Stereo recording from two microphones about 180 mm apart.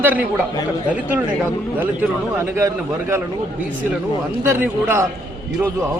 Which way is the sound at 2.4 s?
15° right (ahead or behind).